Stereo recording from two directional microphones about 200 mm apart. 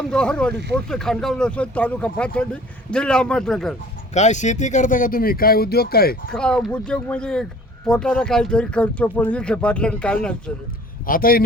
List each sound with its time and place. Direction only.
0.0 s speech: 5° left (ahead or behind)
4.1 s speech: 35° left (ahead or behind)
6.3 s speech: 5° left (ahead or behind)
11.0 s a man's voice: 45° left (ahead or behind)